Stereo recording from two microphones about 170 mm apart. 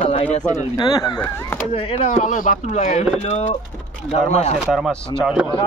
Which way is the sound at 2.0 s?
45° left (ahead or behind).